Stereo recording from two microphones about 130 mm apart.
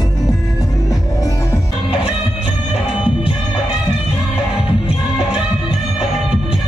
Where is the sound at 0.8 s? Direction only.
25° left (ahead or behind).